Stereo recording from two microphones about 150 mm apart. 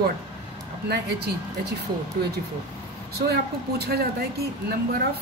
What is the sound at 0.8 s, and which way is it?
A woman's voice, 90° right.